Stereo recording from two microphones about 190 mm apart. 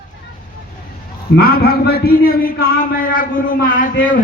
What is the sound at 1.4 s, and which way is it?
A man's voice, 50° left (ahead or behind).